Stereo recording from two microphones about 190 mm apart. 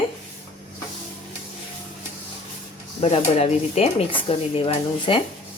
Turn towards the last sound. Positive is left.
turn(degrees=25)  # may be behind; listen again after turning